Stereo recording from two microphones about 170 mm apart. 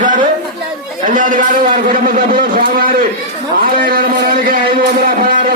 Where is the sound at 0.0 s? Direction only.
50° right (ahead or behind).